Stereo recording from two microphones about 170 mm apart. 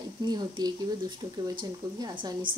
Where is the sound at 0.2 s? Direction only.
25° right (ahead or behind).